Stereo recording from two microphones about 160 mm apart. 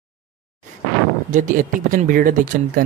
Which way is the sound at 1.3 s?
55° right (ahead or behind).